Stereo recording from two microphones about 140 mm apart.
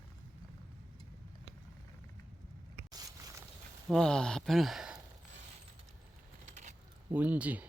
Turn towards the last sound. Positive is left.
turn(degrees=-10)  # may be behind; listen again after turning